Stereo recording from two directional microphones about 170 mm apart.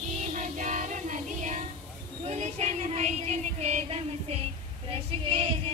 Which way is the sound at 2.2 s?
40° right (ahead or behind).